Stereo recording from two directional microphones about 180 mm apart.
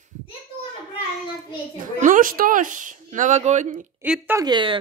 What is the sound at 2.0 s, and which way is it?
Speech, 50° right (ahead or behind).